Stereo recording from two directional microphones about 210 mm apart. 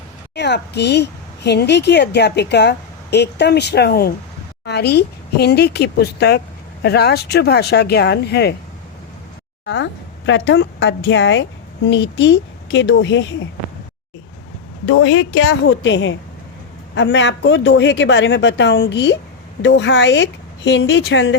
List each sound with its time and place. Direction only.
0.3 s a woman's voice: 55° left (ahead or behind)
9.6 s a woman's voice: 60° left (ahead or behind)
14.8 s a woman's voice: 75° left (ahead or behind); by 21.3 s 55° left (ahead or behind)